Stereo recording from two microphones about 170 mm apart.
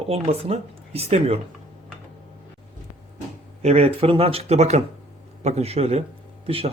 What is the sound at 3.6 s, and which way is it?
Speech, 40° right (ahead or behind).